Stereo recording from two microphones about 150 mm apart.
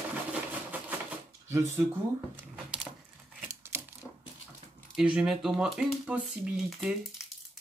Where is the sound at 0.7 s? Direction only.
10° right (ahead or behind).